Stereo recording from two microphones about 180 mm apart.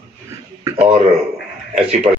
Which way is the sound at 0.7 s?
15° right (ahead or behind).